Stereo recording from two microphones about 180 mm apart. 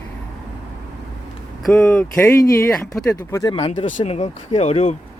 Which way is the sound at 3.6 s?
30° left (ahead or behind).